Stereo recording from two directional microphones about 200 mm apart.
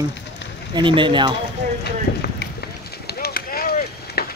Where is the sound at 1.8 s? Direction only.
55° left (ahead or behind).